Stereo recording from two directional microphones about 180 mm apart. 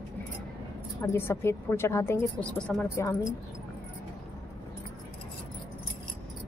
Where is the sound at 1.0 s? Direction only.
15° left (ahead or behind).